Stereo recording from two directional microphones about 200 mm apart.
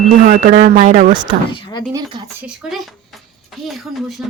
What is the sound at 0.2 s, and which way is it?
Speech, 40° right (ahead or behind).